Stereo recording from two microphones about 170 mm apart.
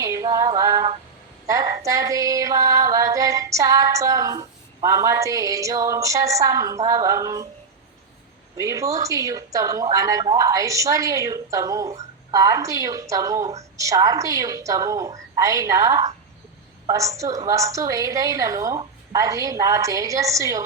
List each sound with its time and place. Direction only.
0.0 s female singing: 20° right (ahead or behind)
1.5 s a woman's voice: 20° right (ahead or behind)
1.8 s music: 20° right (ahead or behind)
8.5 s music: 20° right (ahead or behind)